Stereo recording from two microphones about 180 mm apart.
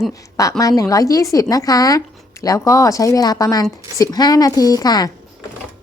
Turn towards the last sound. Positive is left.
turn(degrees=20)  # may be behind; listen again after turning